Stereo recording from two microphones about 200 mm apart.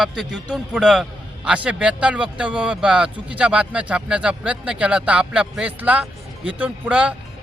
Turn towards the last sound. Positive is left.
turn(degrees=-5)  # may be behind; listen again after turning